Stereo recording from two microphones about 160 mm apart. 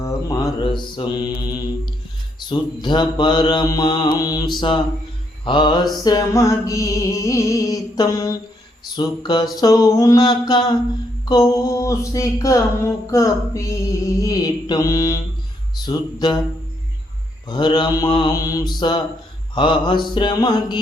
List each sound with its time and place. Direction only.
0.0 s mantra: 20° left (ahead or behind)
2.5 s music: 30° left (ahead or behind)
17.4 s music: 30° left (ahead or behind)